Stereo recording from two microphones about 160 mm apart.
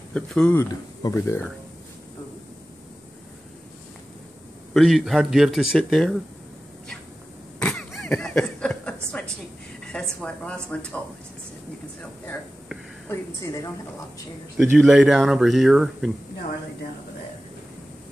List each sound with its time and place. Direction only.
0.1 s speech: 5° left (ahead or behind)
4.7 s speech: centre (ahead or behind)
7.5 s a sound: 5° left (ahead or behind)
9.8 s speech: 5° left (ahead or behind)
13.1 s a woman's voice: 20° left (ahead or behind)
14.6 s speech: 5° right (ahead or behind)